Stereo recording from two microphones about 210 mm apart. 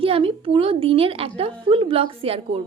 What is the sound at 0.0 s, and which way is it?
A woman's voice, 25° right (ahead or behind).